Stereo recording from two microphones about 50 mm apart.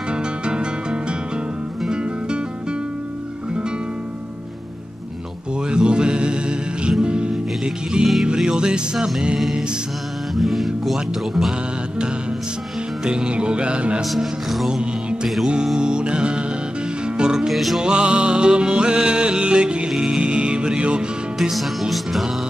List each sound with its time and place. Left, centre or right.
0.1 s music: centre
5.7 s music: centre
8.9 s music: centre
13.0 s music: centre
14.0 s music: centre
14.7 s music: centre
17.5 s music: centre
17.7 s music: centre
21.4 s music: centre